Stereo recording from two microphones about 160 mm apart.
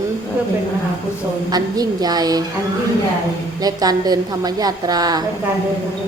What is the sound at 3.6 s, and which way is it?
A woman's voice, 25° right (ahead or behind).